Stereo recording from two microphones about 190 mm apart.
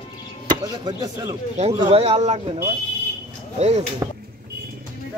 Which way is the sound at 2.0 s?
35° right (ahead or behind).